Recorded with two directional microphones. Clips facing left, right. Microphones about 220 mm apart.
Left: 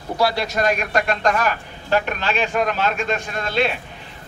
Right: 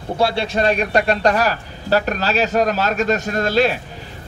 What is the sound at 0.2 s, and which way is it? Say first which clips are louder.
A man's voice: right 2 dB; 25° right (ahead or behind).